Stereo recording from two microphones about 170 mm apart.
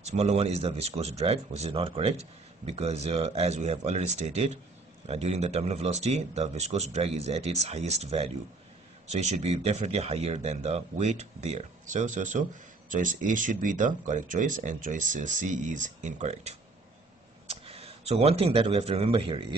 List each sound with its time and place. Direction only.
0.0 s speech: 40° right (ahead or behind)